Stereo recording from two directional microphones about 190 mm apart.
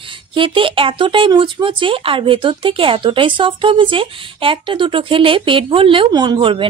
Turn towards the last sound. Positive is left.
turn(degrees=-25)  # may be behind; listen again after turning